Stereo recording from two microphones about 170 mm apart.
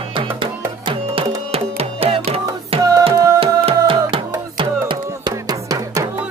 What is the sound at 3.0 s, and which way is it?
Tabla, 25° right (ahead or behind).